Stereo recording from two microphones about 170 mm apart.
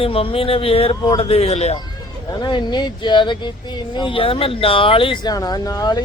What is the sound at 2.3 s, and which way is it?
Speech, 25° left (ahead or behind).